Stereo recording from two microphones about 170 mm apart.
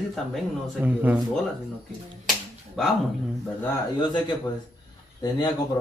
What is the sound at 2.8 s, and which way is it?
Speech, centre (ahead or behind).